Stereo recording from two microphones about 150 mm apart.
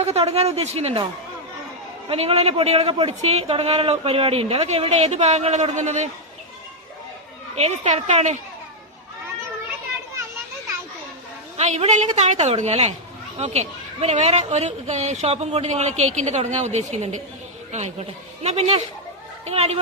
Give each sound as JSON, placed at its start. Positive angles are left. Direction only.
{"t": 0.0, "sound": "a man's voice", "side_deg": -45}
{"t": 2.0, "sound": "a man's voice", "side_deg": -40}
{"t": 7.5, "sound": "a man's voice", "side_deg": -50}
{"t": 11.5, "sound": "a woman's voice", "side_deg": -50}